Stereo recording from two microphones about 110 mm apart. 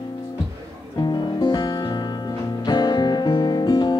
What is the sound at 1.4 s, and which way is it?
Music, 40° left (ahead or behind).